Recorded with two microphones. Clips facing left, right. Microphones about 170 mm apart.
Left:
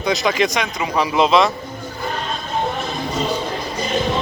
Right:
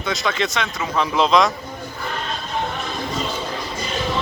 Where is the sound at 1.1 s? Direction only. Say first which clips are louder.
Left 2 dB; 5° left (ahead or behind).